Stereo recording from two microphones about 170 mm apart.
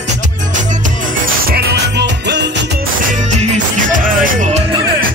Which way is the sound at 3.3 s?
40° right (ahead or behind).